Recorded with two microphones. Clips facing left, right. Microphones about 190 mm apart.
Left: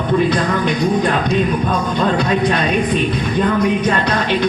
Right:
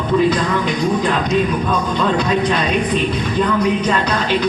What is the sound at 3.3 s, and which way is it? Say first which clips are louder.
Music: left 1 dB; 50° left (ahead or behind).